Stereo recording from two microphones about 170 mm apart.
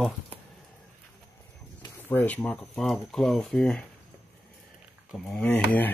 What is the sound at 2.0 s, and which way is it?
Speech, 10° left (ahead or behind).